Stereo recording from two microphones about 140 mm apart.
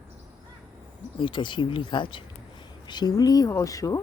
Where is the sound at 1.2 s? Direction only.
35° left (ahead or behind).